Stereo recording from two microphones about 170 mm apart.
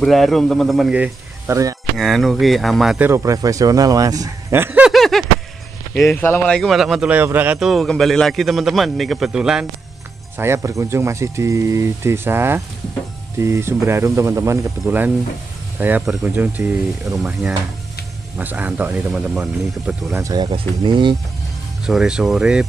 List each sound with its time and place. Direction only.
0.0 s a man's voice: centre (ahead or behind)
3.1 s a man's voice: 20° right (ahead or behind); by 5.2 s centre (ahead or behind)
5.9 s a man's voice: 15° left (ahead or behind); by 20.2 s centre (ahead or behind)
20.2 s a man's voice: 20° right (ahead or behind)
21.8 s a man's voice: 5° right (ahead or behind)